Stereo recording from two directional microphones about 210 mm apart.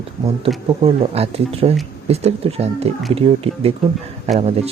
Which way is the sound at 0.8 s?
30° right (ahead or behind).